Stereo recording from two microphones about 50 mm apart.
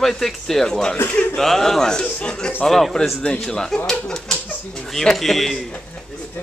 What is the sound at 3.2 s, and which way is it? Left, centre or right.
A man's voice, centre.